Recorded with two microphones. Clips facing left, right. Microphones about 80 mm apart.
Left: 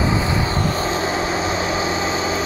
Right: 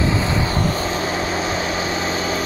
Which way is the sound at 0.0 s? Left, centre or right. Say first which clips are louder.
Even; centre.